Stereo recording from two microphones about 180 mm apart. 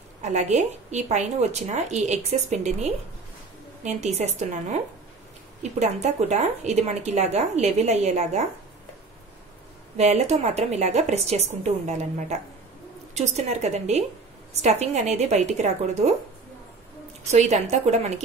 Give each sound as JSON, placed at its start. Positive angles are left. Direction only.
{"t": 0.2, "sound": "speech", "side_deg": -40}
{"t": 5.6, "sound": "speech", "side_deg": -40}
{"t": 9.9, "sound": "speech", "side_deg": -40}
{"t": 17.3, "sound": "speech", "side_deg": -40}